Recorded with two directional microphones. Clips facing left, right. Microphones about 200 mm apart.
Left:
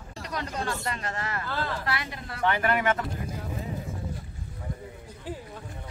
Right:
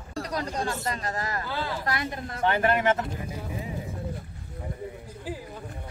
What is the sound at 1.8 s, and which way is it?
Speech, 45° right (ahead or behind).